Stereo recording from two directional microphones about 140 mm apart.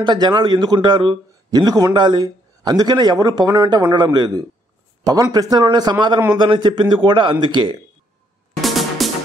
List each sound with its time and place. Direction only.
0.0 s a man's voice: 30° right (ahead or behind)
8.5 s music: centre (ahead or behind)